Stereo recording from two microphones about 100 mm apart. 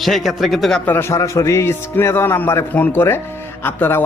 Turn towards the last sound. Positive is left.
turn(degrees=20)  # may be behind; listen again after turning